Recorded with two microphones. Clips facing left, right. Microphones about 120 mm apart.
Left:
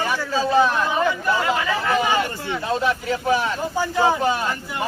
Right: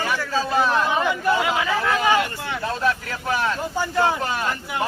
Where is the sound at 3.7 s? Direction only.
10° left (ahead or behind).